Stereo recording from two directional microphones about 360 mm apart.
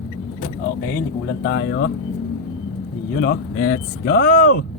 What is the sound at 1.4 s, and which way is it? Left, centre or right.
Speech, left.